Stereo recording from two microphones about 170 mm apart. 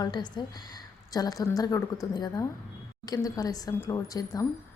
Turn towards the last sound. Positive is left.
turn(degrees=20)  # may be behind; listen again after turning